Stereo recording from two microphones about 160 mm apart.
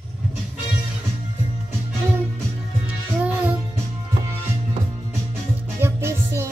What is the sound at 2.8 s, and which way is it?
Music, 10° right (ahead or behind).